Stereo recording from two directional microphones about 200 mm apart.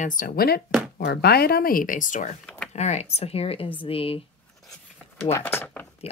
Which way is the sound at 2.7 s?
35° left (ahead or behind).